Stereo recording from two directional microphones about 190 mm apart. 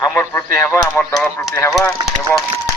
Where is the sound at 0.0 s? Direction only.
10° left (ahead or behind).